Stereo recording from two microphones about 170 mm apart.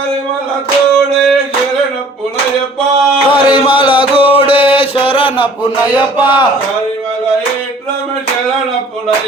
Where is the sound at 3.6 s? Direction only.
30° left (ahead or behind).